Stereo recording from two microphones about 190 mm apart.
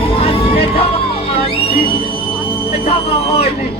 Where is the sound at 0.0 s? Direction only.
30° left (ahead or behind).